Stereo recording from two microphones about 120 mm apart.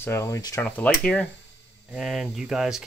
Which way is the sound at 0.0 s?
25° left (ahead or behind).